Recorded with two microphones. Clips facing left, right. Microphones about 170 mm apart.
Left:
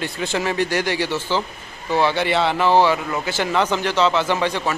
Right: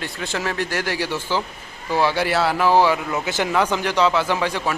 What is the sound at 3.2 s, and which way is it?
Speech, 20° right (ahead or behind).